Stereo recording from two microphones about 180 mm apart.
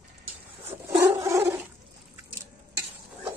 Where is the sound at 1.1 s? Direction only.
15° right (ahead or behind).